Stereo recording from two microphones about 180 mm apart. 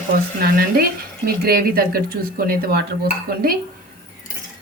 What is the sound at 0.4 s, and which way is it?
Speech, 55° right (ahead or behind).